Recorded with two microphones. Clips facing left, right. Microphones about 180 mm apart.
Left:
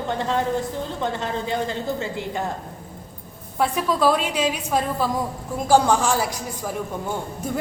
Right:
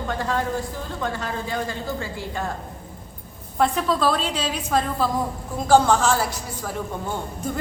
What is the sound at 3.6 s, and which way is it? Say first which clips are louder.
A woman's voice: even; 10° left (ahead or behind).